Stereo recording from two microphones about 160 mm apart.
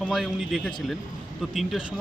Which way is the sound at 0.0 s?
Centre (ahead or behind).